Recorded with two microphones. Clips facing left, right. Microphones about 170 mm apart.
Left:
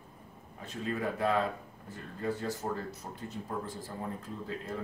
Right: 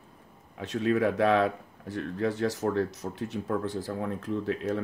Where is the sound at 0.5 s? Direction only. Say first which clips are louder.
Right 10 dB; 80° right.